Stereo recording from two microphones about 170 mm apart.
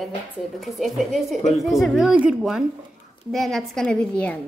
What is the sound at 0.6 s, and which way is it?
A woman's voice, centre (ahead or behind).